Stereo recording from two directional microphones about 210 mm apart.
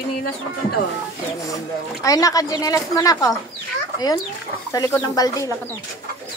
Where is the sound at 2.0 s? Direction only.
15° left (ahead or behind).